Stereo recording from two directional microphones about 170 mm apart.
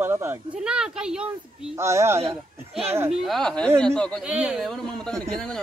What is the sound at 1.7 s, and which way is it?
Speech, 15° right (ahead or behind).